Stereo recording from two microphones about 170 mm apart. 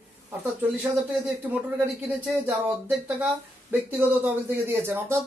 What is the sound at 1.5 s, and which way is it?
Speech, 10° right (ahead or behind).